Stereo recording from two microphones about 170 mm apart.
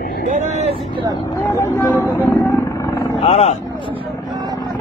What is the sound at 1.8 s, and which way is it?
Speech, 15° left (ahead or behind).